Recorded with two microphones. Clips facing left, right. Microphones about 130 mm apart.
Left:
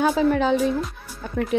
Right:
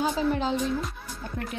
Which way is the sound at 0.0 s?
70° left (ahead or behind).